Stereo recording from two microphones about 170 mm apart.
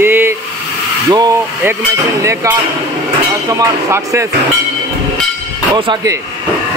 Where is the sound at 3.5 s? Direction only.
15° right (ahead or behind).